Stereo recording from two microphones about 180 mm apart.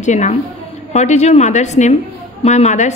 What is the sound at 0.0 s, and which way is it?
A woman's voice, 40° left (ahead or behind).